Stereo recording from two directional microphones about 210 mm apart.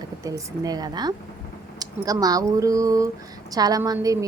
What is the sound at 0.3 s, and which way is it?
A woman's voice, 15° right (ahead or behind).